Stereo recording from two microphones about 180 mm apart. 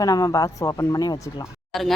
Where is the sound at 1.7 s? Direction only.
Centre (ahead or behind).